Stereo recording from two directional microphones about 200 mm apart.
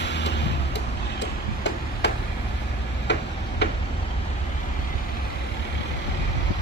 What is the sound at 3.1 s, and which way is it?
Tick-tock, 60° left (ahead or behind).